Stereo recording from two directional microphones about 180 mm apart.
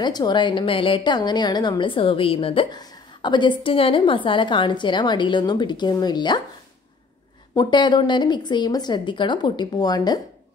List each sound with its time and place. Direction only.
0.0 s a woman's voice: 25° left (ahead or behind)
7.5 s a woman's voice: 25° left (ahead or behind)